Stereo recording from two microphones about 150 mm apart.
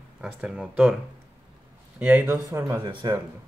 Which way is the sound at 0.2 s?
5° right (ahead or behind).